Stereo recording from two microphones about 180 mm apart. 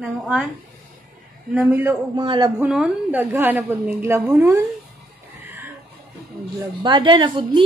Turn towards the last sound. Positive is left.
turn(degrees=-25)  # may be behind; listen again after turning